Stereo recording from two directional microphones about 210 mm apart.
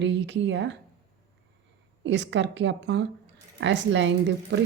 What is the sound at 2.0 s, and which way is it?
A woman's voice, 60° right (ahead or behind).